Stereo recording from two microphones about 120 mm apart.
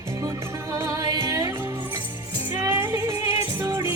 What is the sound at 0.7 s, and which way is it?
Music, 25° right (ahead or behind).